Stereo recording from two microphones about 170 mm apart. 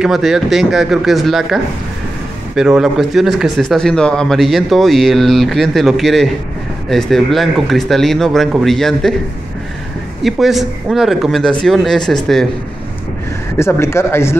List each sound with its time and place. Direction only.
0.0 s speech: centre (ahead or behind)
10.2 s speech: centre (ahead or behind)
13.6 s speech: 15° left (ahead or behind)